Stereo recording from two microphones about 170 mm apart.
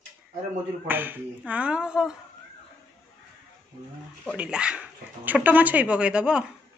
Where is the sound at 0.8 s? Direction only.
10° right (ahead or behind).